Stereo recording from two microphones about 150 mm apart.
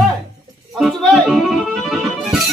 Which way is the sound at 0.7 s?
Centre (ahead or behind).